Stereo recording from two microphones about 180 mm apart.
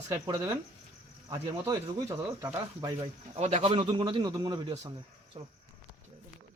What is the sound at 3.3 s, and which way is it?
A man's voice, 35° right (ahead or behind).